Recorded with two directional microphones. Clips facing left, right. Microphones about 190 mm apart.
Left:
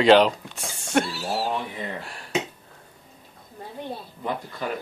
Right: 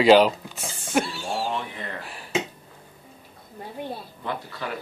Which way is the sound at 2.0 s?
5° right (ahead or behind).